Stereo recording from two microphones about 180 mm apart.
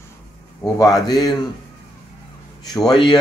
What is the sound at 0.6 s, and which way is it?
Speech, 10° left (ahead or behind).